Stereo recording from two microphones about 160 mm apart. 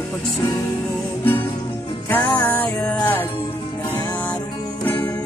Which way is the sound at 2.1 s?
10° left (ahead or behind).